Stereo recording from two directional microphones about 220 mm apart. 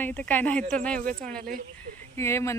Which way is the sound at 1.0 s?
40° right (ahead or behind).